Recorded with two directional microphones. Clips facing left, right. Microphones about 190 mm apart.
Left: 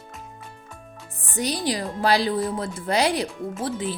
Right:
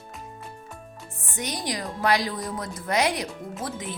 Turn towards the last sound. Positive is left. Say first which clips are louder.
# left 6 dB
turn(degrees=30)  # may be behind; listen again after turning